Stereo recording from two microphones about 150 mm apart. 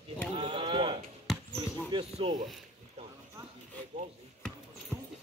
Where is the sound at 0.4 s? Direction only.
30° right (ahead or behind).